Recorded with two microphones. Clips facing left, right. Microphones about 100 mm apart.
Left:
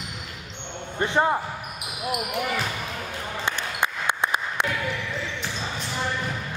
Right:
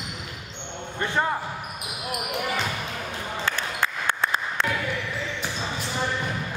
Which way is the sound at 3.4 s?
20° left (ahead or behind).